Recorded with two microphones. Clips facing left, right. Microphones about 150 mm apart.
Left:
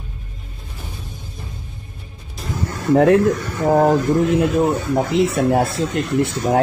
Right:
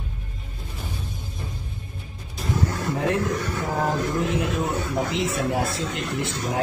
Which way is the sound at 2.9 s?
60° left (ahead or behind).